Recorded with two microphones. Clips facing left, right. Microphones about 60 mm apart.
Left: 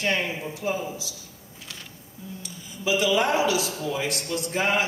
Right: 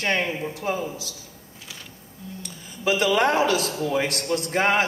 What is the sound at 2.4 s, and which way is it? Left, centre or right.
A man's voice, right.